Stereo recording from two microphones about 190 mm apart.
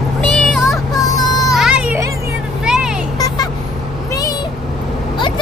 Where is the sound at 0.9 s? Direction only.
20° left (ahead or behind).